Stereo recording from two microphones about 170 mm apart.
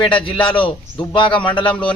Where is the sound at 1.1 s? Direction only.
30° left (ahead or behind).